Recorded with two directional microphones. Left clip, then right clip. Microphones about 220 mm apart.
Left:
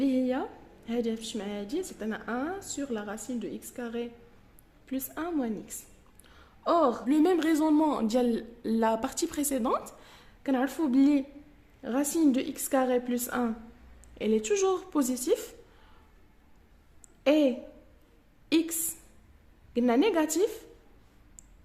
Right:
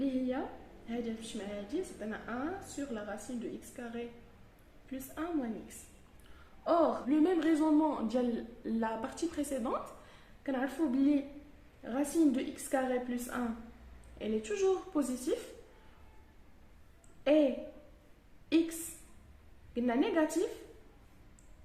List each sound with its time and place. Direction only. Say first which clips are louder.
0.0 s a sound: left 7 dB; 55° left (ahead or behind)
0.9 s a woman's voice: left 8 dB; 55° left (ahead or behind)
6.7 s a woman's voice: left 4 dB; 55° left (ahead or behind)
17.2 s a woman's voice: left 4 dB; 55° left (ahead or behind)
19.7 s speech: left 6 dB; 55° left (ahead or behind)